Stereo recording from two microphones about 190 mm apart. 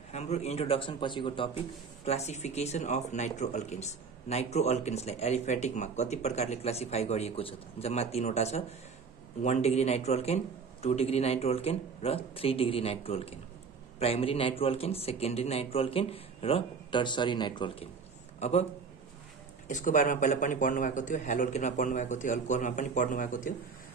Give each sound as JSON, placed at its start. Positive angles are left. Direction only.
{"t": 0.1, "sound": "a man's voice", "side_deg": 35}
{"t": 18.4, "sound": "a man's voice", "side_deg": 35}
{"t": 19.7, "sound": "speech", "side_deg": 40}